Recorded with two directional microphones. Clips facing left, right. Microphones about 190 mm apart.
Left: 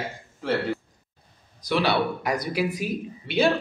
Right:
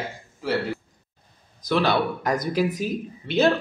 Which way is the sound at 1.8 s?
10° left (ahead or behind).